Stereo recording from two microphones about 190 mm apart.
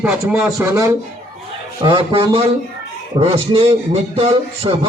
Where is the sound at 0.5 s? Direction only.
15° right (ahead or behind).